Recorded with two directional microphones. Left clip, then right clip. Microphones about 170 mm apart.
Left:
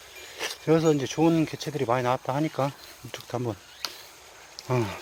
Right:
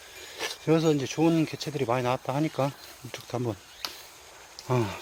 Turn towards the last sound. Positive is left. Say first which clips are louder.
# even
turn(degrees=-25)  # may be behind; listen again after turning